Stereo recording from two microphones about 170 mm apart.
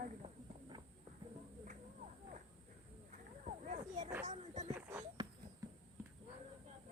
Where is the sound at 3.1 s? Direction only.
45° right (ahead or behind).